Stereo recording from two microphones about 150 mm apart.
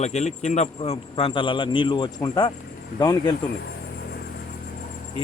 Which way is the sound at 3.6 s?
90° left.